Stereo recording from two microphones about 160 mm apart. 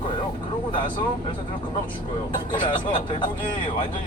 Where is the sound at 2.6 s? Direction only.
30° left (ahead or behind).